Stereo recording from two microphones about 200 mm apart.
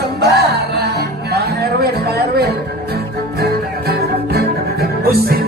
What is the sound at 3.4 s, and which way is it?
Music, 50° right (ahead or behind).